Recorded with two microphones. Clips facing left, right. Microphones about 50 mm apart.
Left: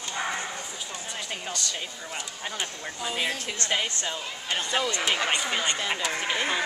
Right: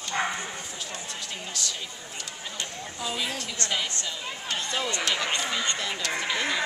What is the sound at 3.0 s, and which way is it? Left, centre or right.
A woman's voice, centre.